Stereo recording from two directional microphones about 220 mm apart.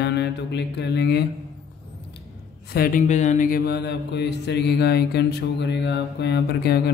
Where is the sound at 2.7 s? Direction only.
40° left (ahead or behind).